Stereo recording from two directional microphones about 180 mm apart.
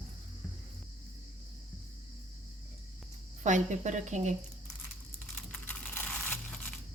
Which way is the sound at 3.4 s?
40° right (ahead or behind).